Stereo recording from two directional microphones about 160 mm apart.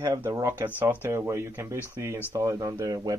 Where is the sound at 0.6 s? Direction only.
10° right (ahead or behind).